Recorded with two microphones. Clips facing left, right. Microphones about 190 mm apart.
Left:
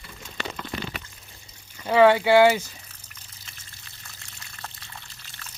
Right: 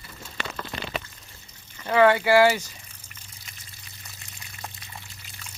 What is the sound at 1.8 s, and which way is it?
Speech, 10° left (ahead or behind).